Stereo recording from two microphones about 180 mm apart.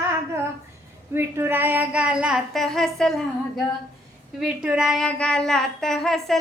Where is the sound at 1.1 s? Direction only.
10° right (ahead or behind).